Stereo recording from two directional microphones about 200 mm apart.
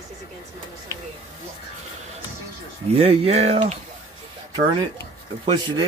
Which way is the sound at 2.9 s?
30° right (ahead or behind).